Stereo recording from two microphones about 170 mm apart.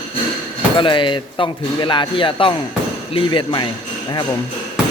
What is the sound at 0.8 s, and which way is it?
Speech, 30° left (ahead or behind).